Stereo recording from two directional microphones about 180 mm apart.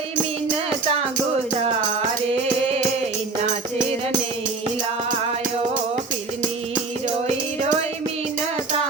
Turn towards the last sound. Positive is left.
turn(degrees=-40)  # may be behind; listen again after turning